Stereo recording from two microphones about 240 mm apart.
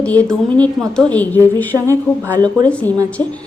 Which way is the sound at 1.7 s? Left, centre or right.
Centre.